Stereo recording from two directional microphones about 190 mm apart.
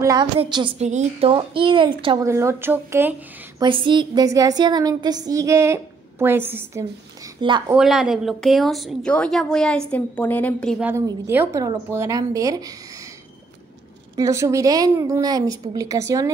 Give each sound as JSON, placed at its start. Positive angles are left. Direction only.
{"t": 0.0, "sound": "a woman's voice", "side_deg": -20}
{"t": 2.2, "sound": "a woman's voice", "side_deg": -15}
{"t": 3.6, "sound": "a woman's voice", "side_deg": -25}
{"t": 7.3, "sound": "a woman's voice", "side_deg": -25}
{"t": 7.7, "sound": "speech", "side_deg": -5}
{"t": 10.8, "sound": "a woman's voice", "side_deg": -10}
{"t": 14.1, "sound": "a woman's voice", "side_deg": -15}